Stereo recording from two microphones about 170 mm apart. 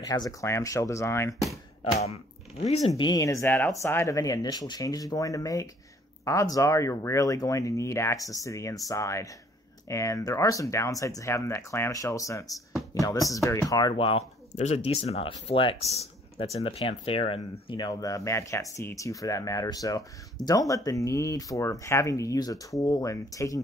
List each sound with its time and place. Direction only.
0.1 s speech: 20° left (ahead or behind)
2.0 s speech: 40° left (ahead or behind)
2.9 s speech: 20° left (ahead or behind)